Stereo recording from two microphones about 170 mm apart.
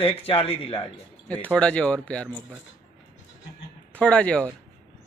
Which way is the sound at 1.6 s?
5° left (ahead or behind).